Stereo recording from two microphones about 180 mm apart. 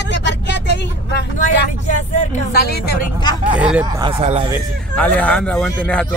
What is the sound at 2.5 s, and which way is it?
Speech, 65° left (ahead or behind).